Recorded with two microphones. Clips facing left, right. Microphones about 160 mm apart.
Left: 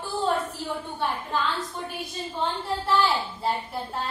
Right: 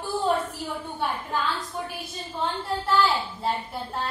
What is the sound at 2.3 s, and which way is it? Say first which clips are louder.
Speech: even; centre (ahead or behind).